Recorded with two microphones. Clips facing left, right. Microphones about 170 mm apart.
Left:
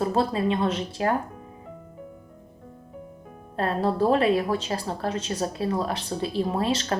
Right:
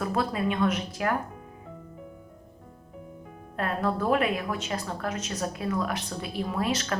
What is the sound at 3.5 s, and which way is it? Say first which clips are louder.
A woman's voice: left 3 dB; 30° left (ahead or behind).